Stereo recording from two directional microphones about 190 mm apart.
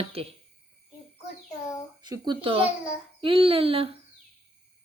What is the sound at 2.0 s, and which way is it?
Speech, 20° right (ahead or behind).